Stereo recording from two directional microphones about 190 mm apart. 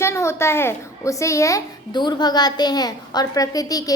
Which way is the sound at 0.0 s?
15° left (ahead or behind).